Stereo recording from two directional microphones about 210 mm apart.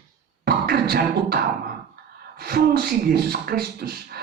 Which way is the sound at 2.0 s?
45° right (ahead or behind).